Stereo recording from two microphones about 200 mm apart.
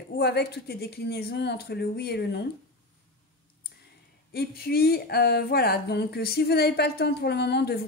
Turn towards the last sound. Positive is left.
turn(degrees=55)  # may be behind; listen again after turning